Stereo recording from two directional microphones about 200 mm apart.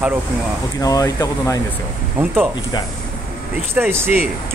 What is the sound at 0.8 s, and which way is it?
Speech, 20° left (ahead or behind).